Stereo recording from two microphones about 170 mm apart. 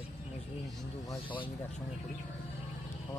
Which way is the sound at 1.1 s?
30° left (ahead or behind).